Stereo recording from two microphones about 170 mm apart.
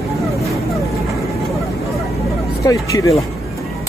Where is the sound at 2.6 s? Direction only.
20° left (ahead or behind).